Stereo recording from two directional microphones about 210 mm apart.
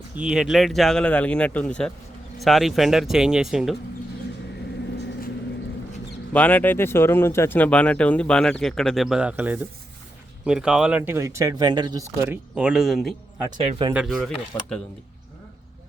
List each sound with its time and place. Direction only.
0.2 s speech: 5° right (ahead or behind)
6.3 s speech: 10° left (ahead or behind); by 12.0 s 20° right (ahead or behind)
12.2 s speech: 5° right (ahead or behind)
13.7 s speech: 25° right (ahead or behind)
13.9 s speech: 5° right (ahead or behind)
14.5 s speech: 15° left (ahead or behind)